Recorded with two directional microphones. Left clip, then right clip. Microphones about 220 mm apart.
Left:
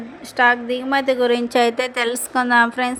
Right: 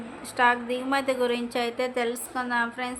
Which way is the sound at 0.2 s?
20° left (ahead or behind).